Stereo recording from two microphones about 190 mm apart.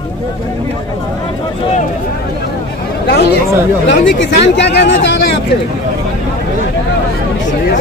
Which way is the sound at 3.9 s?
65° left (ahead or behind).